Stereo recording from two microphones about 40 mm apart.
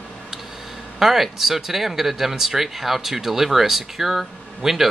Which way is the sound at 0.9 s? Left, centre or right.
Centre.